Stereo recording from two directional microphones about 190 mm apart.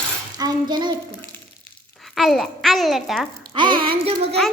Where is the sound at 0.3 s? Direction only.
20° right (ahead or behind).